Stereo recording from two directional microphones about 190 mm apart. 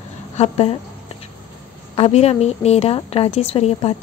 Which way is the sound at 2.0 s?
35° left (ahead or behind).